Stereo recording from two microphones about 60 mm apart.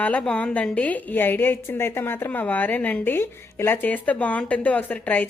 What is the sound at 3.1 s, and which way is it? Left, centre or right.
Speech, left.